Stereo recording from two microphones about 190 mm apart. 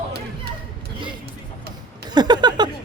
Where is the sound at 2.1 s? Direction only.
20° right (ahead or behind).